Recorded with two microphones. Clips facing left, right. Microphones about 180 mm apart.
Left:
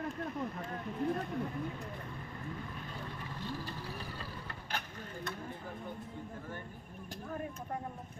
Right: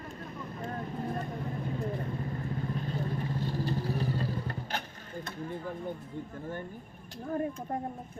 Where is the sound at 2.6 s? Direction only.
35° right (ahead or behind).